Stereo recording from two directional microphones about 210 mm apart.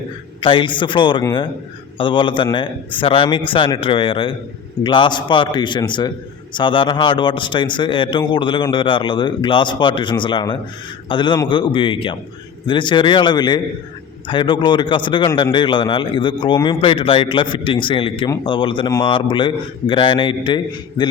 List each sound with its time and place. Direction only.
0.4 s a man's voice: 25° left (ahead or behind)